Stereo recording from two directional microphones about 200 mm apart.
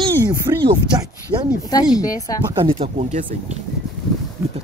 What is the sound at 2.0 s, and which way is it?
Speech, 15° left (ahead or behind).